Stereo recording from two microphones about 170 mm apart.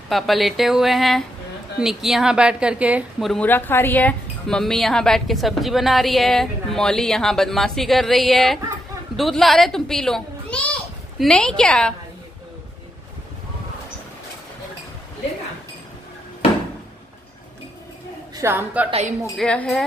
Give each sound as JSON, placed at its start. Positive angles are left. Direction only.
{"t": 0.1, "sound": "a woman's voice", "side_deg": 0}
{"t": 3.4, "sound": "a woman's voice", "side_deg": 10}
{"t": 18.3, "sound": "a woman's voice", "side_deg": -15}
{"t": 18.9, "sound": "a woman's voice", "side_deg": -40}
{"t": 19.3, "sound": "a woman's voice", "side_deg": 5}